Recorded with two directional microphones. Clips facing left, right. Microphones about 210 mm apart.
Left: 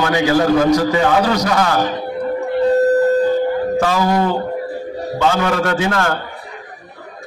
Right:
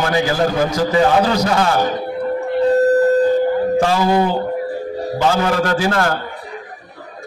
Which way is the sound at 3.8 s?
30° right (ahead or behind).